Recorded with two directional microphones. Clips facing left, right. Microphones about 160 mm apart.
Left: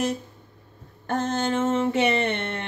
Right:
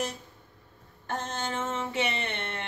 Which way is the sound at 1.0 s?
50° left (ahead or behind).